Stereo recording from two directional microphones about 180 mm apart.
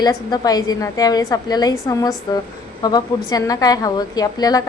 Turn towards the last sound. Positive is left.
turn(degrees=20)  # may be behind; listen again after turning